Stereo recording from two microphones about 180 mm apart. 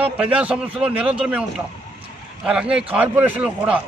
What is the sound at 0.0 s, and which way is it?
Speech, 5° right (ahead or behind).